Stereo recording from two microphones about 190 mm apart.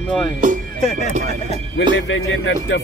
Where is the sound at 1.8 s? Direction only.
85° left.